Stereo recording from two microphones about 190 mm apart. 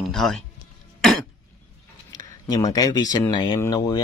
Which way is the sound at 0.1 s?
Centre (ahead or behind).